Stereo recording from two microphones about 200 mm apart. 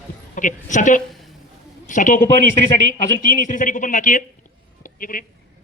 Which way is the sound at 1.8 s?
40° left (ahead or behind).